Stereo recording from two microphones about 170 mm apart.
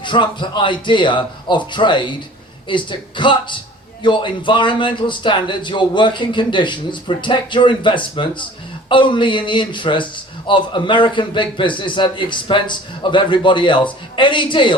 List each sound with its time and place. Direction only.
0.0 s a man's voice: 25° left (ahead or behind)